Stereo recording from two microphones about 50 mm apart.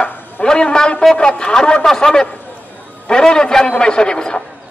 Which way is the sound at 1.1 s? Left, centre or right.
Centre.